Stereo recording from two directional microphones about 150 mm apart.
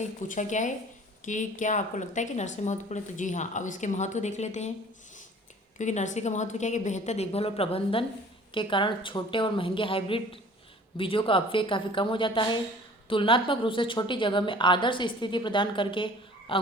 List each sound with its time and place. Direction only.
0.3 s a woman's voice: 55° left (ahead or behind)
5.7 s a woman's voice: 55° left (ahead or behind); by 16.6 s 35° left (ahead or behind)